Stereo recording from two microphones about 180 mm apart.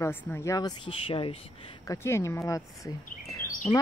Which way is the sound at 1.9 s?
15° left (ahead or behind).